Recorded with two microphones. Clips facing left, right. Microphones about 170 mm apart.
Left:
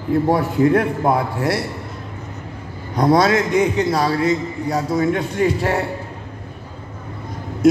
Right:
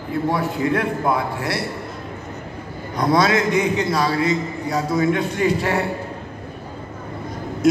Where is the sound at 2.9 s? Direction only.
35° left (ahead or behind).